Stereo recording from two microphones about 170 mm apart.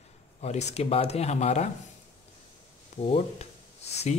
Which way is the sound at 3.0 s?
35° left (ahead or behind).